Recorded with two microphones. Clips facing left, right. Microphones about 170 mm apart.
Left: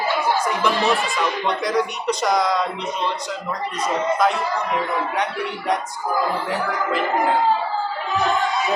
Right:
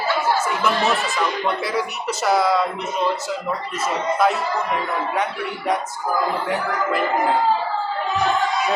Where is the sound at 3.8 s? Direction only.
5° right (ahead or behind).